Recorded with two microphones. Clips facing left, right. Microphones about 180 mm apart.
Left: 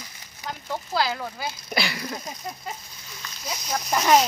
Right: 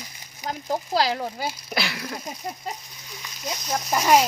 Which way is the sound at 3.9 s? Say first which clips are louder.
Even; 10° right (ahead or behind).